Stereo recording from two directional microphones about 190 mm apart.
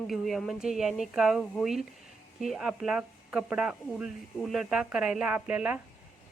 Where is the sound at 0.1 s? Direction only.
Centre (ahead or behind).